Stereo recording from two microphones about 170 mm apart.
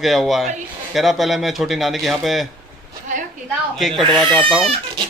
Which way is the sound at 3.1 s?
45° right (ahead or behind).